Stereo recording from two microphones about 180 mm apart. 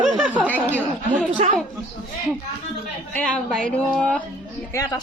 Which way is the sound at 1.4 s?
40° right (ahead or behind).